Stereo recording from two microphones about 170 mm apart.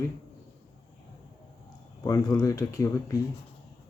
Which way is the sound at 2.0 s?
20° left (ahead or behind).